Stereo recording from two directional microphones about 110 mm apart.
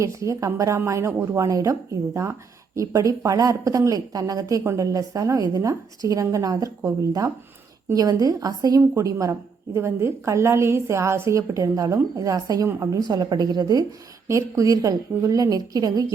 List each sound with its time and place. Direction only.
0.0 s a woman's voice: 30° right (ahead or behind)
2.7 s a woman's voice: 30° right (ahead or behind)